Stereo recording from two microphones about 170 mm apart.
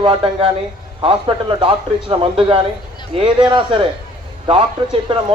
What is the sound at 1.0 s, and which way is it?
Speech, 30° right (ahead or behind).